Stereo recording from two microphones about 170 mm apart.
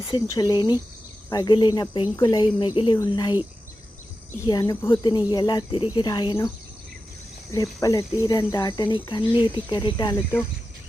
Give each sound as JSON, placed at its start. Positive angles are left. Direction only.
{"t": 0.1, "sound": "cricket", "side_deg": 20}
{"t": 4.4, "sound": "cricket", "side_deg": 20}
{"t": 7.5, "sound": "cricket", "side_deg": 20}